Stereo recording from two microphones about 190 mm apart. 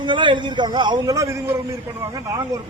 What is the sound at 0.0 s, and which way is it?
A man's voice, 25° right (ahead or behind).